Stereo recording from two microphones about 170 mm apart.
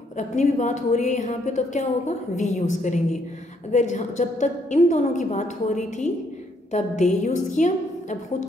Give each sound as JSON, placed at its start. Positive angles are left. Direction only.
{"t": 0.2, "sound": "a woman's voice", "side_deg": 45}